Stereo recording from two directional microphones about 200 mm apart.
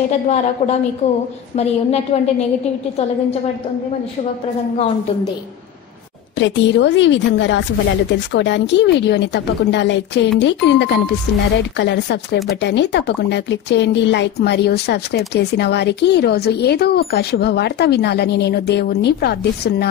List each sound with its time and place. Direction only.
6.4 s speech: 65° left (ahead or behind)